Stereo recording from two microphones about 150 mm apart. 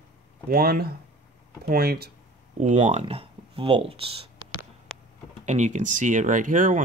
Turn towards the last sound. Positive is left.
turn(degrees=-60)  # may be behind; listen again after turning